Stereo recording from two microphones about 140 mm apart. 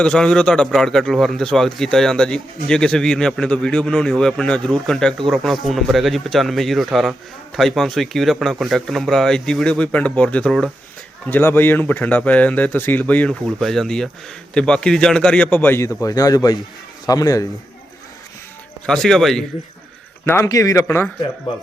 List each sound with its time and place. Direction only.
0.0 s a man's voice: 5° left (ahead or behind); by 17.4 s 25° left (ahead or behind)
18.9 s a man's voice: centre (ahead or behind)
20.2 s a man's voice: 20° left (ahead or behind)